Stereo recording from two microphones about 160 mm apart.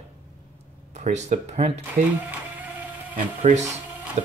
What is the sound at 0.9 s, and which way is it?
Speech, 45° right (ahead or behind).